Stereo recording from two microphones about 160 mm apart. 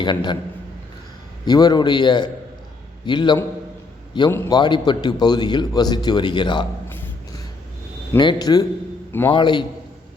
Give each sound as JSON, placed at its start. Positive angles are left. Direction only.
{"t": 0.0, "sound": "a man's voice", "side_deg": 30}
{"t": 1.5, "sound": "a man's voice", "side_deg": 25}
{"t": 4.3, "sound": "a man's voice", "side_deg": 15}
{"t": 4.5, "sound": "a man's voice", "side_deg": 25}
{"t": 6.8, "sound": "a sound", "side_deg": 10}
{"t": 8.1, "sound": "a man's voice", "side_deg": 25}